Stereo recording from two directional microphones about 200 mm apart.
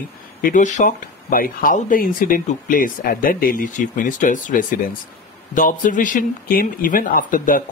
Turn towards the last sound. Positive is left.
turn(degrees=45)  # may be behind; listen again after turning